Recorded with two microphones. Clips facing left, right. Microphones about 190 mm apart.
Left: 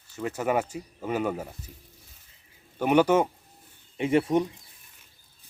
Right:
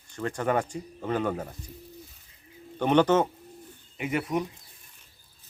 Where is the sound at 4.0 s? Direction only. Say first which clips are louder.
Left 6 dB; 30° left (ahead or behind).